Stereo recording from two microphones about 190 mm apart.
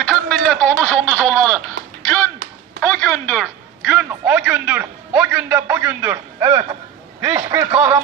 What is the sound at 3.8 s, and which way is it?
A man's voice, 5° right (ahead or behind).